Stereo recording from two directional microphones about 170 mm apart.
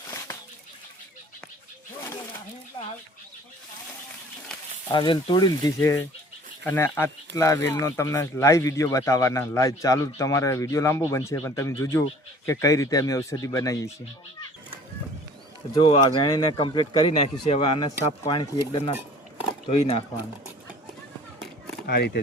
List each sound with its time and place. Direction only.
4.9 s speech: 30° left (ahead or behind)
15.7 s speech: 30° left (ahead or behind)
18.9 s a sound: 10° right (ahead or behind)
19.6 s speech: 35° left (ahead or behind)
21.8 s speech: 70° left (ahead or behind)